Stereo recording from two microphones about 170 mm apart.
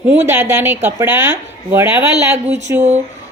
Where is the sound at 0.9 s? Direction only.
10° right (ahead or behind).